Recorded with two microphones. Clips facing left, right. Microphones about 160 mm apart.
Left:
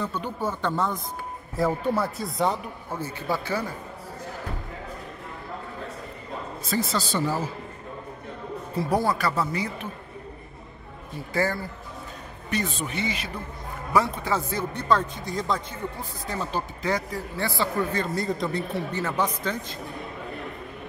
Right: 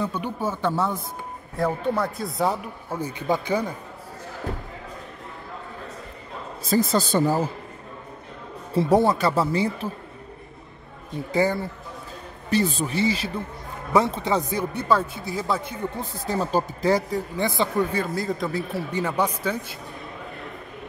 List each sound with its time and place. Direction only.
0.0 s speech: 10° right (ahead or behind)
1.6 s speech: centre (ahead or behind)
3.0 s speech: 15° right (ahead or behind)
6.7 s speech: 50° right (ahead or behind)
8.7 s speech: 25° right (ahead or behind)
11.3 s speech: 20° right (ahead or behind)
12.4 s speech: 35° right (ahead or behind); by 15.8 s 5° right (ahead or behind)
16.0 s speech: 30° right (ahead or behind)
17.4 s speech: 20° right (ahead or behind)
18.0 s speech: centre (ahead or behind)
18.9 s speech: 15° right (ahead or behind)